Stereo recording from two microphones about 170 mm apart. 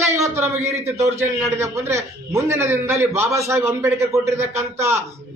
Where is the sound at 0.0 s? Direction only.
15° right (ahead or behind).